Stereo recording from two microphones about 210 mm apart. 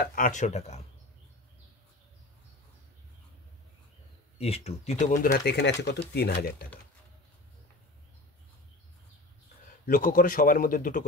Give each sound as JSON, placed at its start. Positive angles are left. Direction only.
{"t": 0.0, "sound": "speech", "side_deg": 40}
{"t": 4.4, "sound": "speech", "side_deg": 30}
{"t": 9.8, "sound": "speech", "side_deg": 40}